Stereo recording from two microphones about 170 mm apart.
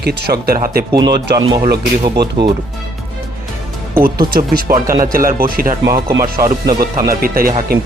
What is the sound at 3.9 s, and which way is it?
Speech, 60° right (ahead or behind).